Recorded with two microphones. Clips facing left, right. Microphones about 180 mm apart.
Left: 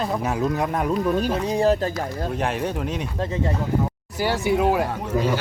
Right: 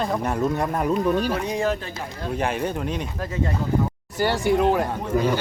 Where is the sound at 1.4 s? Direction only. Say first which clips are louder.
Left 5 dB; 35° left (ahead or behind).